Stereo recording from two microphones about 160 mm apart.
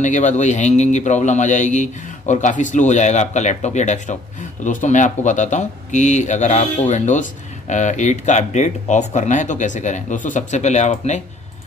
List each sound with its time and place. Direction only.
0.0 s speech: 50° left (ahead or behind)